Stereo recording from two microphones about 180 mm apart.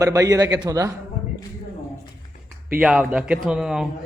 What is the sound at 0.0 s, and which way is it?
Speech, 20° right (ahead or behind).